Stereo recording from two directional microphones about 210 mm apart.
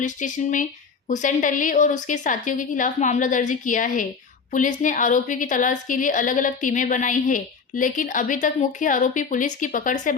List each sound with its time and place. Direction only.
0.0 s a woman's voice: 35° left (ahead or behind)